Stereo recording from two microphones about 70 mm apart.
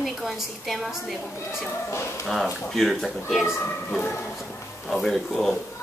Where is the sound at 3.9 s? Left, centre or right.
Left.